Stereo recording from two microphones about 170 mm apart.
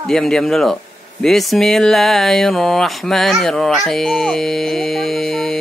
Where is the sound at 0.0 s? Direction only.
Centre (ahead or behind).